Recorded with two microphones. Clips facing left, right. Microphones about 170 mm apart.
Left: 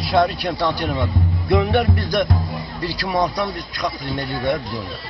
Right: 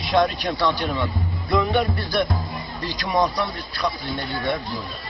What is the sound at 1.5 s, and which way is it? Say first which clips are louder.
Music: left 3 dB; 65° left (ahead or behind).